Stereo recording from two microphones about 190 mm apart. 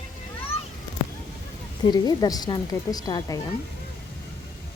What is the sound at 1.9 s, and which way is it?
A woman's voice, 20° left (ahead or behind).